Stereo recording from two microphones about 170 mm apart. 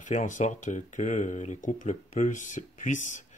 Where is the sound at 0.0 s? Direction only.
50° left (ahead or behind).